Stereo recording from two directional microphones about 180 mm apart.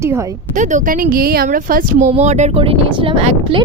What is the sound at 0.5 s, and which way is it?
Speech, 45° right (ahead or behind).